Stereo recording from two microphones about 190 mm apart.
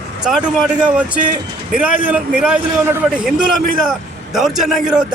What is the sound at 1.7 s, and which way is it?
A man's voice, 5° right (ahead or behind).